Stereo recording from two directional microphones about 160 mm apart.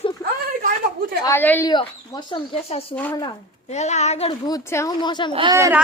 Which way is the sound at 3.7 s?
45° left (ahead or behind).